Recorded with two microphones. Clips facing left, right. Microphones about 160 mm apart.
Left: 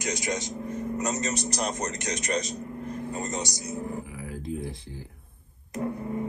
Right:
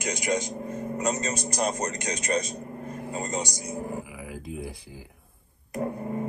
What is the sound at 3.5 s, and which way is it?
Speech, 20° right (ahead or behind).